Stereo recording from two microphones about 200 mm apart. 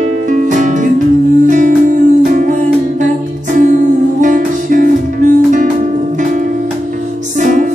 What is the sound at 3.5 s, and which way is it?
Music, 40° right (ahead or behind).